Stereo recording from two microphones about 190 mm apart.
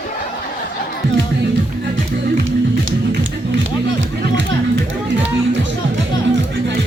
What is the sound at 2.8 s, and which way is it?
Music, 90° right.